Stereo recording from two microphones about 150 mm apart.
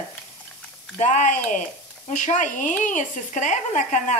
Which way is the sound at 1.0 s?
50° left (ahead or behind).